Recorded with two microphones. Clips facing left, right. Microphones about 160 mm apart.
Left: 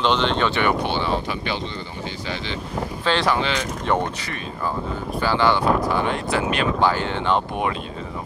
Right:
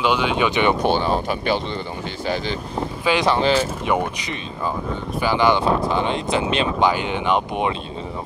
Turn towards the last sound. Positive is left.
turn(degrees=-20)  # may be behind; listen again after turning